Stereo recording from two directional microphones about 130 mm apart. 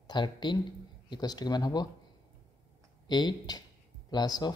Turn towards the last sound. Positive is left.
turn(degrees=30)  # may be behind; listen again after turning